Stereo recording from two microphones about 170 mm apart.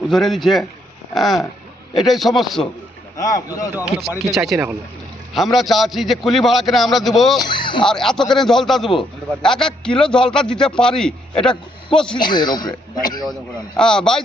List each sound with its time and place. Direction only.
0.1 s a man's voice: centre (ahead or behind)
3.2 s a man's voice: 20° left (ahead or behind)
3.8 s a man's voice: 10° right (ahead or behind)
7.5 s speech: 30° left (ahead or behind)
7.9 s a man's voice: 5° left (ahead or behind)
12.2 s a man's voice: 25° left (ahead or behind)
13.7 s a man's voice: 5° left (ahead or behind)